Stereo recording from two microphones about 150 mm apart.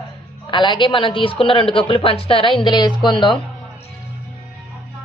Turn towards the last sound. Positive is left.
turn(degrees=30)  # may be behind; listen again after turning